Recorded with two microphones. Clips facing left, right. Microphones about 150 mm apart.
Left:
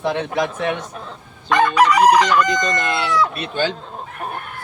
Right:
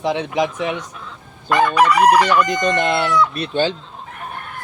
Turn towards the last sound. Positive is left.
turn(degrees=-30)  # may be behind; listen again after turning